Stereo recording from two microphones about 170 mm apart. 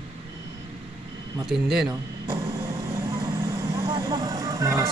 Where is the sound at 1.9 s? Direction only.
20° right (ahead or behind).